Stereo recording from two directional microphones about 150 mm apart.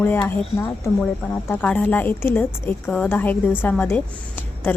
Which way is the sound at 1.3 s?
10° left (ahead or behind).